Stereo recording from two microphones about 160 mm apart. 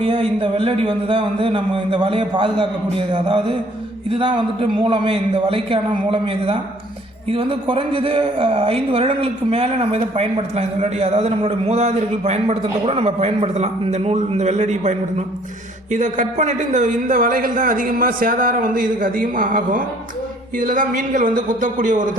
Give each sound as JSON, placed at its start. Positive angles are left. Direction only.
{"t": 0.0, "sound": "a man's voice", "side_deg": -35}